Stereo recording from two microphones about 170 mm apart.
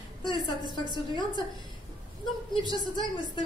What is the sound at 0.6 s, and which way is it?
Speech, 25° left (ahead or behind).